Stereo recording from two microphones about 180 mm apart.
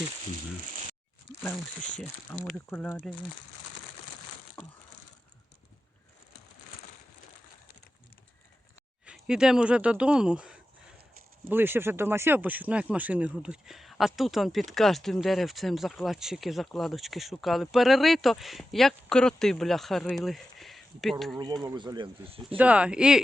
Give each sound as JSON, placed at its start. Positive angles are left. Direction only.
{"t": 2.5, "sound": "speech", "side_deg": 5}
{"t": 9.0, "sound": "speech", "side_deg": -5}
{"t": 21.6, "sound": "speech", "side_deg": -25}
{"t": 22.4, "sound": "speech", "side_deg": -5}